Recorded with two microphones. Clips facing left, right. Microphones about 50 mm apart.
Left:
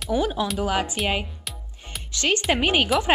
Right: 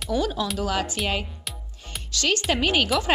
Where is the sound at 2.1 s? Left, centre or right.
Left.